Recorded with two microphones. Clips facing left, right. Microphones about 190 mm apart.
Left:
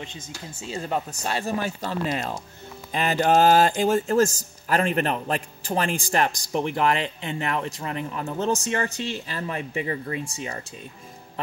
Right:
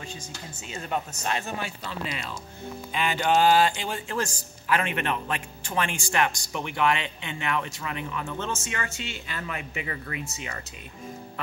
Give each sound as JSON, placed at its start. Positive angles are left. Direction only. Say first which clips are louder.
{"t": 0.6, "sound": "speech", "louder": "left 3 dB", "side_deg": 30}